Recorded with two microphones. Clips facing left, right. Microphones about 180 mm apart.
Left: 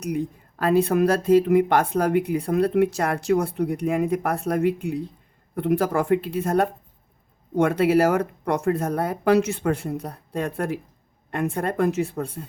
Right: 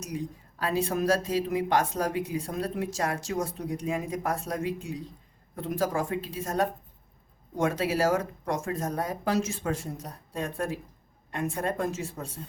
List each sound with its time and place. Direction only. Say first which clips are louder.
0.0 s speech: left 8 dB; 60° left (ahead or behind)